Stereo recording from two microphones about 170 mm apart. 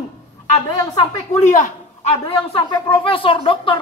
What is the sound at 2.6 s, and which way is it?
Speech, 30° left (ahead or behind).